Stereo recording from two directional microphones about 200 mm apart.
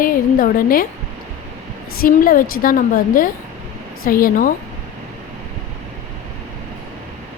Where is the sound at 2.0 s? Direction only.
45° left (ahead or behind).